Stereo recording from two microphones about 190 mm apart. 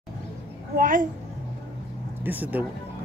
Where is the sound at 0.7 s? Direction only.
45° right (ahead or behind).